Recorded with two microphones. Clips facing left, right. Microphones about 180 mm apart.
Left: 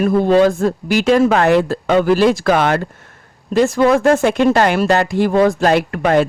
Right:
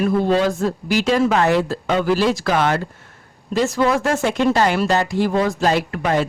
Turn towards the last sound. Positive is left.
turn(degrees=55)  # may be behind; listen again after turning